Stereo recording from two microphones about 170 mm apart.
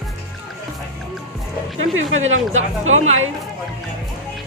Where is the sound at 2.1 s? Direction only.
40° right (ahead or behind).